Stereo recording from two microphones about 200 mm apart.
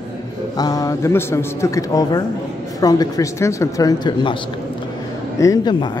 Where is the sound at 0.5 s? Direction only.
20° left (ahead or behind).